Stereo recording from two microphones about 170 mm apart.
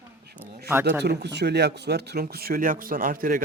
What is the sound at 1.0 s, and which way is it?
Speech, 80° right.